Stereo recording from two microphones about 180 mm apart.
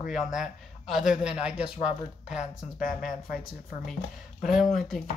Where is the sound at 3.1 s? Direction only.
50° left (ahead or behind).